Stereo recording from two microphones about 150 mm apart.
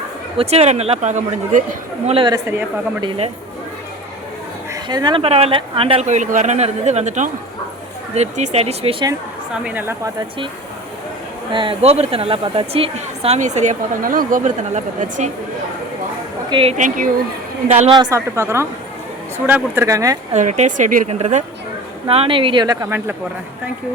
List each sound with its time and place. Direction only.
0.3 s speech: 45° right (ahead or behind)
2.0 s speech: 40° right (ahead or behind)
2.3 s speech: 15° right (ahead or behind)
3.0 s speech: 35° right (ahead or behind)
4.7 s speech: 25° right (ahead or behind)
9.6 s speech: 15° right (ahead or behind)
11.5 s speech: 35° right (ahead or behind); by 15.3 s 55° right (ahead or behind)
16.5 s a woman's voice: 35° right (ahead or behind)
16.7 s a woman's voice: 55° right (ahead or behind)
17.7 s speech: 45° right (ahead or behind)
17.9 s a woman's voice: 25° right (ahead or behind)
20.3 s a woman's voice: 50° right (ahead or behind)
21.1 s speech: 50° right (ahead or behind); by 23.1 s 15° right (ahead or behind)